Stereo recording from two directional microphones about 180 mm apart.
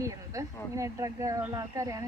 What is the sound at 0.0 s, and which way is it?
Speech, 15° right (ahead or behind).